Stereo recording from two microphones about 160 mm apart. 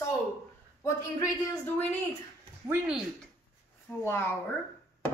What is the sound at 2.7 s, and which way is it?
Speech, 5° right (ahead or behind).